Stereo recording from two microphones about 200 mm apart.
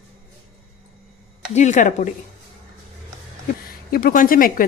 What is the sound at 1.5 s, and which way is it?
Speech, 40° left (ahead or behind).